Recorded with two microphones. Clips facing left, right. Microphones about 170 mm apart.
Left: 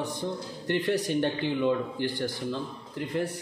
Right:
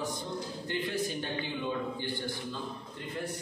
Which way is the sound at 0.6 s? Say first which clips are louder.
Left 8 dB; 75° left (ahead or behind).